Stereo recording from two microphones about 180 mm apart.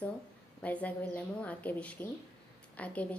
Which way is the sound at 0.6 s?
10° left (ahead or behind).